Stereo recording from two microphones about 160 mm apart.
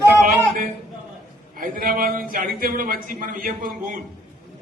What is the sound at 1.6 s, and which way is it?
A man's voice, 60° right (ahead or behind).